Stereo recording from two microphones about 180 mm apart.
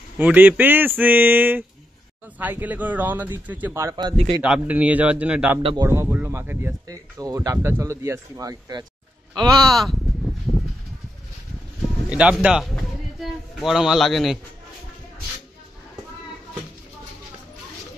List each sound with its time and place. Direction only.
0.2 s speech: 10° right (ahead or behind)
5.6 s speech: 30° right (ahead or behind)
5.9 s speech: 10° right (ahead or behind)
9.7 s a sound: centre (ahead or behind)
12.1 s a man's voice: 5° right (ahead or behind)